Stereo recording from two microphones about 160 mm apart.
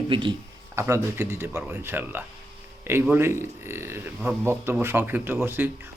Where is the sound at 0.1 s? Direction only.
30° right (ahead or behind).